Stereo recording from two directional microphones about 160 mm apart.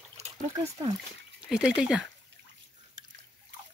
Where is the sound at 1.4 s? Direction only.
5° right (ahead or behind).